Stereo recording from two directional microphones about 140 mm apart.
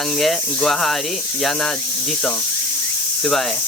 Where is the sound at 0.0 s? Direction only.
Centre (ahead or behind).